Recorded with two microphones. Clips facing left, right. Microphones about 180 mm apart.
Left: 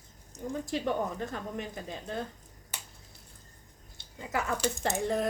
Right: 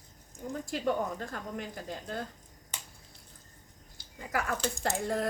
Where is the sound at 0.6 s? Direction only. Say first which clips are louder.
Right 1 dB; 20° left (ahead or behind).